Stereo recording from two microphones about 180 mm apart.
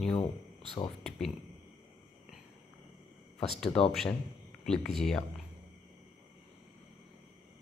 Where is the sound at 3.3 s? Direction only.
5° left (ahead or behind).